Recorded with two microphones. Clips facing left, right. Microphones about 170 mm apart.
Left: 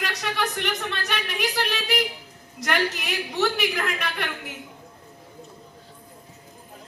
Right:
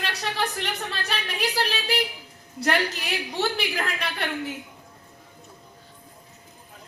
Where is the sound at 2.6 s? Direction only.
30° right (ahead or behind).